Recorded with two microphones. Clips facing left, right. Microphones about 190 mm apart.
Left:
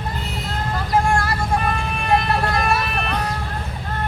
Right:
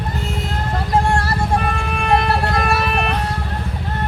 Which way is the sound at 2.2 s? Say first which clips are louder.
Right 2 dB; 65° right (ahead or behind).